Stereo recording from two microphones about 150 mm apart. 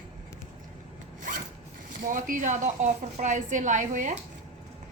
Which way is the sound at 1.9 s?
65° right (ahead or behind).